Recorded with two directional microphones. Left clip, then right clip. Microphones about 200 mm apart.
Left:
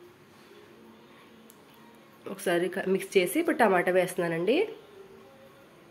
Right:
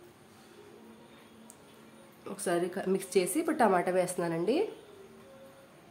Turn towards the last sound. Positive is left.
turn(degrees=0)  # may be behind; listen again after turning